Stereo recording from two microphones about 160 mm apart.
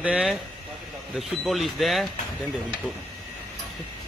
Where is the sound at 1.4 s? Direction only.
Centre (ahead or behind).